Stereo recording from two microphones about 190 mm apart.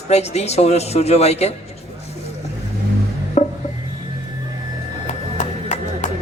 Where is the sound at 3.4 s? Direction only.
40° left (ahead or behind).